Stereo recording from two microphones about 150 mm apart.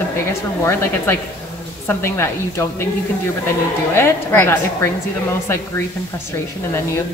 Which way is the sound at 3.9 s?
15° left (ahead or behind).